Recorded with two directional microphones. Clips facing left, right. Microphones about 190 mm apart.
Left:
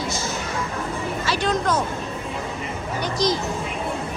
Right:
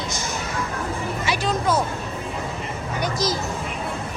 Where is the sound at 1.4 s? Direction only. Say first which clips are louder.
Even; 5° right (ahead or behind).